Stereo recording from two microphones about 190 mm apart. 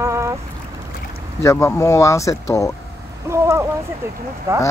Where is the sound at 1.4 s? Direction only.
15° left (ahead or behind).